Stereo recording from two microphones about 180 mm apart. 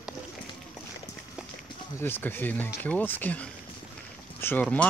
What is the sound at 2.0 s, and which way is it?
Speech, 10° left (ahead or behind).